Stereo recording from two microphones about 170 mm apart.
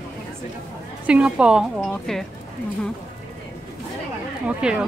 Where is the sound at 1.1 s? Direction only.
5° right (ahead or behind).